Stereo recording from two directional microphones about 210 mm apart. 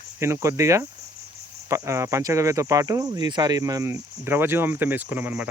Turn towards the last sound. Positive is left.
turn(degrees=-10)  # may be behind; listen again after turning